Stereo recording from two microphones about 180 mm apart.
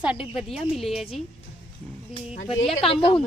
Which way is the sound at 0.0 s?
5° right (ahead or behind).